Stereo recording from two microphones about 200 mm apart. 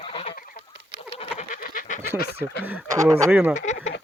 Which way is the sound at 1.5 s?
40° left (ahead or behind).